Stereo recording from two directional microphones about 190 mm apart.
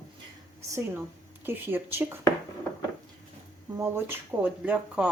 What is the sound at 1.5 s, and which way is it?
Speech, 10° right (ahead or behind).